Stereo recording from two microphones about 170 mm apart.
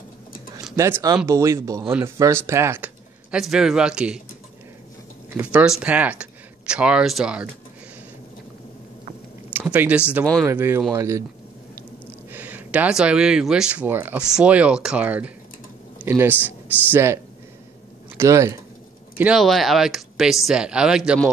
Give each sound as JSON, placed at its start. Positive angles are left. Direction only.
{"t": 0.7, "sound": "speech", "side_deg": -15}
{"t": 5.3, "sound": "speech", "side_deg": -10}
{"t": 9.5, "sound": "speech", "side_deg": -10}
{"t": 12.3, "sound": "speech", "side_deg": -10}
{"t": 19.1, "sound": "speech", "side_deg": -5}